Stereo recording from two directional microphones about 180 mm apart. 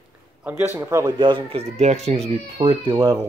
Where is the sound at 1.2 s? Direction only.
25° right (ahead or behind).